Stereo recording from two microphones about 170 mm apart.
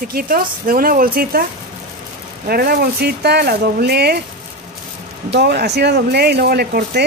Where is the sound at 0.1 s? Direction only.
55° right (ahead or behind).